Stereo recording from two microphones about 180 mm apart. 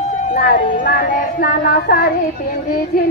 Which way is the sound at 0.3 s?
50° left (ahead or behind).